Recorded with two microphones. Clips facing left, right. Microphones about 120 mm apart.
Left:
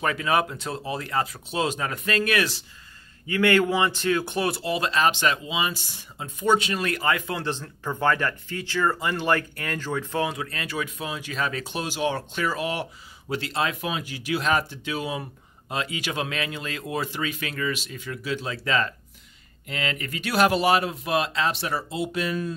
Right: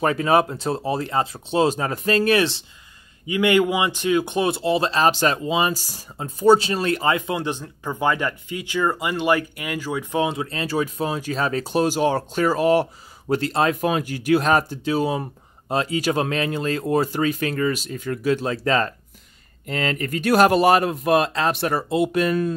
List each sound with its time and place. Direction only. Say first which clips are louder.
0.0 s speech: right 5 dB; 35° right (ahead or behind)
3.3 s speech: right 3 dB; 15° right (ahead or behind); by 22.5 s 55° right (ahead or behind)